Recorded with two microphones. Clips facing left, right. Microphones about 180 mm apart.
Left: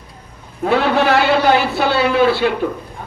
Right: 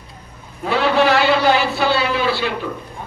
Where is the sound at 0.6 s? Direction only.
55° left (ahead or behind).